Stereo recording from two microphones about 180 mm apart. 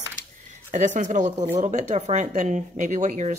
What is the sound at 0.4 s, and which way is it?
Speech, 45° right (ahead or behind).